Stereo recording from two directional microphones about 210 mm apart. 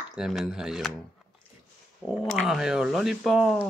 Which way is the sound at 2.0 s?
Centre (ahead or behind).